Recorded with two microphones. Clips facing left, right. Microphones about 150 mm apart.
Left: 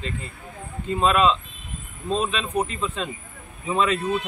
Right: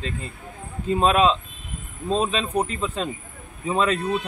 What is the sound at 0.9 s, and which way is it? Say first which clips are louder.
Speech: right 1 dB; 40° right (ahead or behind).